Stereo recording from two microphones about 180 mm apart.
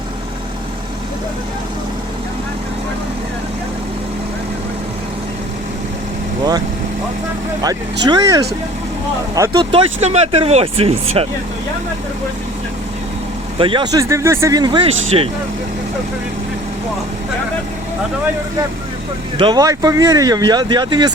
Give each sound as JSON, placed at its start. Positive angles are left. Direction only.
{"t": 8.0, "sound": "speech", "side_deg": -20}
{"t": 13.6, "sound": "speech", "side_deg": -25}
{"t": 19.4, "sound": "speech", "side_deg": -25}